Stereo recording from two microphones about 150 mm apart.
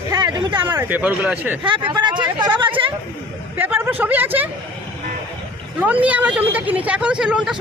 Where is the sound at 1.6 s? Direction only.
35° right (ahead or behind).